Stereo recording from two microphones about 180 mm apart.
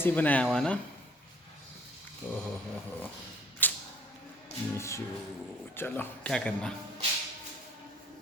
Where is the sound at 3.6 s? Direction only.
10° left (ahead or behind).